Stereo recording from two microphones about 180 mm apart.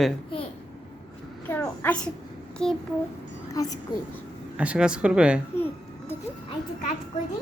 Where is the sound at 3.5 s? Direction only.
20° left (ahead or behind).